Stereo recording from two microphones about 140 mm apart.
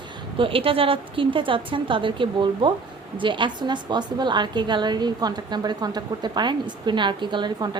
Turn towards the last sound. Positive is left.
turn(degrees=-35)  # may be behind; listen again after turning